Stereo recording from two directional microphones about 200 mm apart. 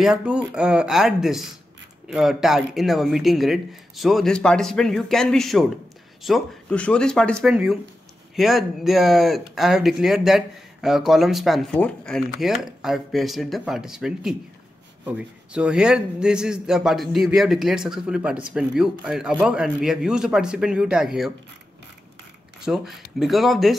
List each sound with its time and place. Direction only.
0.0 s speech: 5° right (ahead or behind)
22.6 s speech: centre (ahead or behind)